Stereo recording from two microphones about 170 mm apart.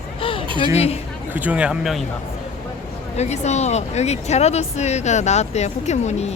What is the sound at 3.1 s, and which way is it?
Speech, 40° left (ahead or behind).